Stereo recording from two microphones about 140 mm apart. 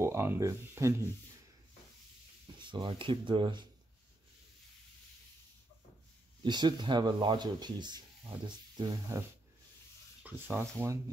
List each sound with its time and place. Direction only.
0.0 s speech: 20° right (ahead or behind)
2.6 s speech: 35° right (ahead or behind)
6.4 s speech: 30° right (ahead or behind)
10.2 s speech: 15° right (ahead or behind)